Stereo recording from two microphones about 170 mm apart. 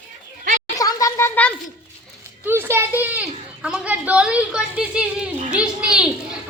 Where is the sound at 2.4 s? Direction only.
15° right (ahead or behind).